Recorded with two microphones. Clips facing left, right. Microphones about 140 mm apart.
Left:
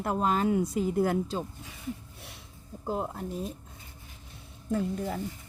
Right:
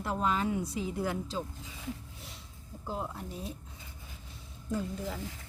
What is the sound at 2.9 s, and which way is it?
Speech, 45° left (ahead or behind).